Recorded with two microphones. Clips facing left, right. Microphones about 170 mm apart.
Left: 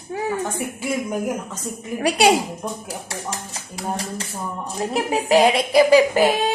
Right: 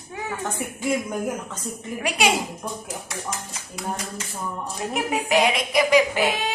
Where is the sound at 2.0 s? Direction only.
35° left (ahead or behind).